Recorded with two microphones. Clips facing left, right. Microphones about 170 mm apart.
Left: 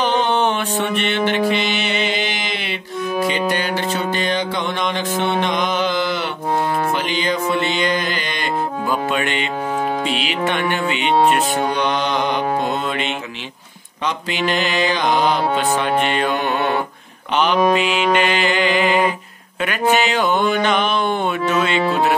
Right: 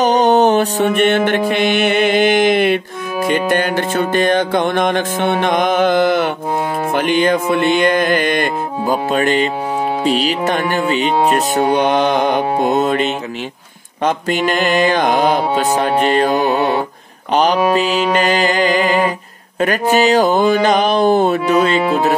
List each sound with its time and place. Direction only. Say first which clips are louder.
0.0 s music: right 6 dB; 40° right (ahead or behind)